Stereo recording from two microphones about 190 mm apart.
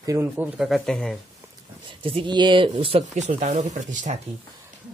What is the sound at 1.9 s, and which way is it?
Speech, 25° right (ahead or behind).